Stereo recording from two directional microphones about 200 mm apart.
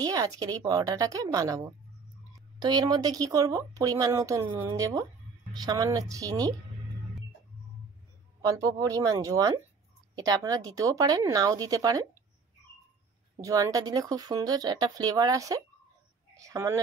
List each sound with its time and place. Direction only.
0.0 s speech: 15° right (ahead or behind)
8.5 s speech: 15° right (ahead or behind)
13.4 s a woman's voice: 15° right (ahead or behind)